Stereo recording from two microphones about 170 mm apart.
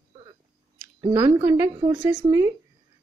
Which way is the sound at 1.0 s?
20° right (ahead or behind).